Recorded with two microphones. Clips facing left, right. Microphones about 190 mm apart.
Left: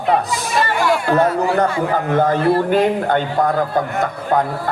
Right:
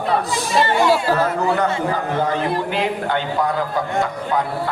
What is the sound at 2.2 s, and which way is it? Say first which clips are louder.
A man's voice: left 8 dB; 50° left (ahead or behind).